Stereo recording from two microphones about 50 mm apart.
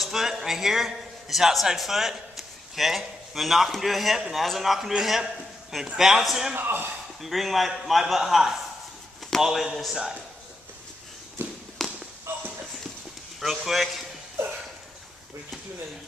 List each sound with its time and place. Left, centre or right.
0.0 s a man's voice: centre
6.5 s speech: right
7.2 s a man's voice: centre
11.4 s walk: right
11.8 s a sound: centre
12.3 s clip-clop: right
13.4 s a man's voice: centre